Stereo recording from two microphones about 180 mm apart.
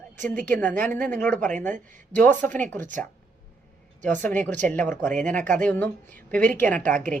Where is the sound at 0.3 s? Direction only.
10° left (ahead or behind).